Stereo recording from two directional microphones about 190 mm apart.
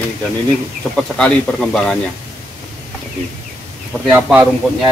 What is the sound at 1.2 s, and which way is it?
Speech, 5° left (ahead or behind).